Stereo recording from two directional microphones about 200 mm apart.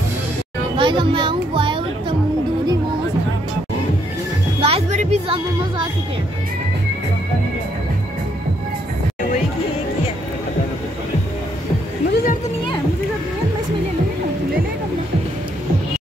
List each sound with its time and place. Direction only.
0.7 s a child's voice: 25° right (ahead or behind)
4.6 s music: 30° right (ahead or behind)
12.1 s a sound: 50° left (ahead or behind)